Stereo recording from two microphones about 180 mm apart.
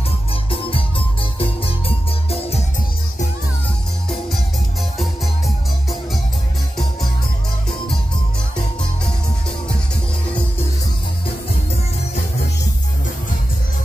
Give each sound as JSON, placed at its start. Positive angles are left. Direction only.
{"t": 0.5, "sound": "music", "side_deg": 30}